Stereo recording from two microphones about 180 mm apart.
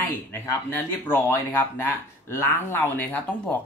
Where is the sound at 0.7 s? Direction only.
10° left (ahead or behind).